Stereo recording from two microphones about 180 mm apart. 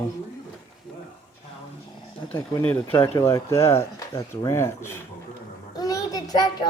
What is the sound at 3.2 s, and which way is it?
Speech, 15° left (ahead or behind).